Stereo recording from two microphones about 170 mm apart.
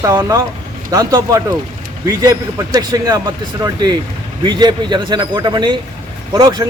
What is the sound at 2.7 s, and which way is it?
Speech, 20° right (ahead or behind).